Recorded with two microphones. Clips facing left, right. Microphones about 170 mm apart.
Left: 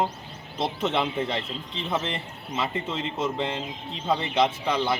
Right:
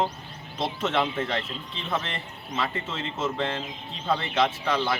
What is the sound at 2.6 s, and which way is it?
A man's voice, 15° left (ahead or behind).